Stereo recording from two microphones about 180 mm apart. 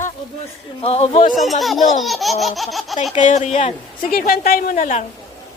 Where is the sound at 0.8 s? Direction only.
35° left (ahead or behind).